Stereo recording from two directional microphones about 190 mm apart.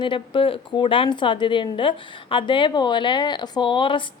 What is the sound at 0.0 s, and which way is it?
A woman's voice, 25° left (ahead or behind).